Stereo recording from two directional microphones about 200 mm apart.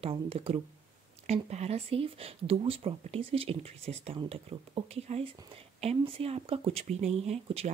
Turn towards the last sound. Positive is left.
turn(degrees=-30)  # may be behind; listen again after turning